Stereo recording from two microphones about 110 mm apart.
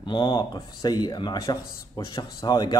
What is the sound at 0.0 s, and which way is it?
Speech, 45° left (ahead or behind).